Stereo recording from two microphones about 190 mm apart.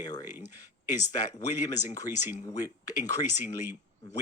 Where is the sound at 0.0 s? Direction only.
20° left (ahead or behind).